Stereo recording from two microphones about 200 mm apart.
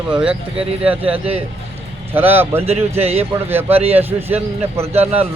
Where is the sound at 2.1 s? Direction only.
10° right (ahead or behind).